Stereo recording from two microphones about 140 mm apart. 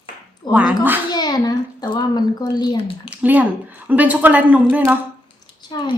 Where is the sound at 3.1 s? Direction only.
10° right (ahead or behind).